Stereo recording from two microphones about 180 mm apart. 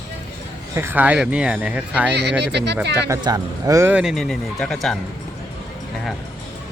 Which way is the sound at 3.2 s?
20° right (ahead or behind).